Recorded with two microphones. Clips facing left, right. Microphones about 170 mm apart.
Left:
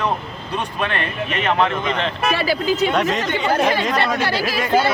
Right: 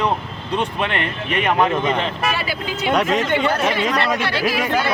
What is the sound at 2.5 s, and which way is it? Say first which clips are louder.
Speech: left 6 dB; 35° left (ahead or behind).